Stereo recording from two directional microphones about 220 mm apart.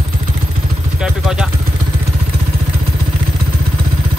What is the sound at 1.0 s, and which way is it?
Vehicle, 5° right (ahead or behind).